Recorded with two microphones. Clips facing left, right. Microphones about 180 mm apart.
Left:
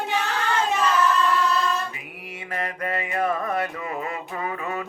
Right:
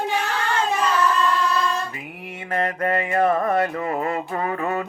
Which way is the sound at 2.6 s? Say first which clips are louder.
Right 6 dB; 50° right (ahead or behind).